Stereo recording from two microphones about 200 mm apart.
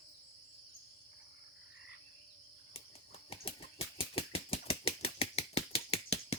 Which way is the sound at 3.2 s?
30° left (ahead or behind).